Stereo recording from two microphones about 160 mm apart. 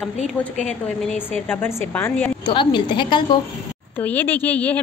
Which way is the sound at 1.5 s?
15° left (ahead or behind).